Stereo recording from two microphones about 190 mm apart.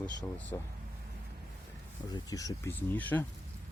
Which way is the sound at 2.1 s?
20° left (ahead or behind).